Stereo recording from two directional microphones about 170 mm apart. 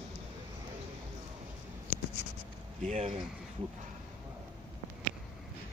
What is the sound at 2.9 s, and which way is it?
Speech, 35° right (ahead or behind).